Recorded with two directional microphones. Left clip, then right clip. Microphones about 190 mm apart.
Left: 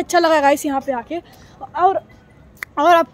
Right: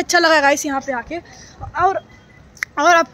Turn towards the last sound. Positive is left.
turn(degrees=15)  # may be behind; listen again after turning